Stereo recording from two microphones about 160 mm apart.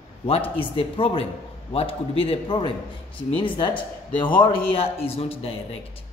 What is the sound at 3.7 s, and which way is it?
Speech, 10° left (ahead or behind).